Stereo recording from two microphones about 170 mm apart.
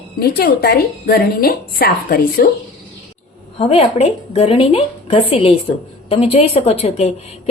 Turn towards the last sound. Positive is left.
turn(degrees=35)  # may be behind; listen again after turning